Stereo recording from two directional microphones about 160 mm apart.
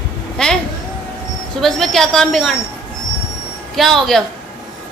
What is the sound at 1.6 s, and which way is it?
Speech, centre (ahead or behind).